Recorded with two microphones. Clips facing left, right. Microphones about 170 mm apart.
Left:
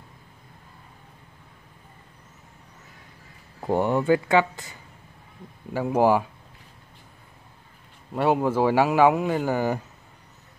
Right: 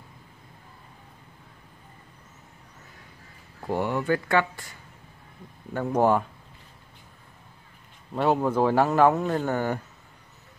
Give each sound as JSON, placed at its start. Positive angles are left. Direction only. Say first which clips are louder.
{"t": 3.6, "sound": "speech", "louder": "left 4 dB", "side_deg": 25}
{"t": 5.7, "sound": "speech", "louder": "left 2 dB", "side_deg": 5}
{"t": 8.1, "sound": "speech", "louder": "left 1 dB", "side_deg": 5}